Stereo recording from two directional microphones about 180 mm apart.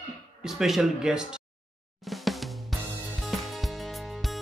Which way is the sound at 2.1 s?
Centre (ahead or behind).